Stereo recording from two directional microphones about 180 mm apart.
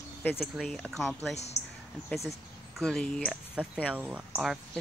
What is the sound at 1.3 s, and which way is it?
Speech, 35° left (ahead or behind).